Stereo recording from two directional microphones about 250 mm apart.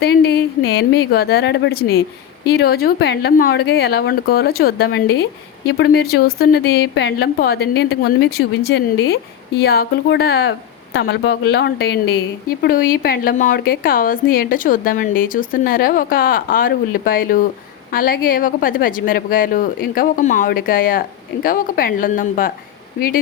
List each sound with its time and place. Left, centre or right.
0.0 s a woman's voice: left